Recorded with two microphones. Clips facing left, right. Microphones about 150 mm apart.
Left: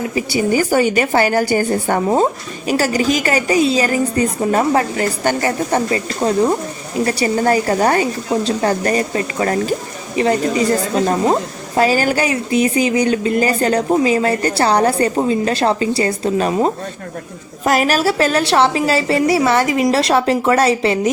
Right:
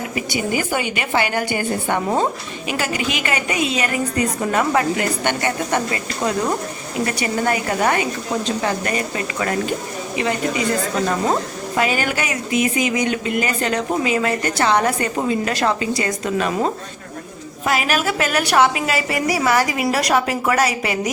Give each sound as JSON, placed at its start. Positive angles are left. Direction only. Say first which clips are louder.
{"t": 0.1, "sound": "a woman's voice", "louder": "left 5 dB", "side_deg": 30}